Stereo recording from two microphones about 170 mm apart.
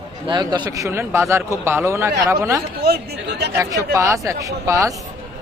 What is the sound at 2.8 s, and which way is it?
Speech, 70° right (ahead or behind).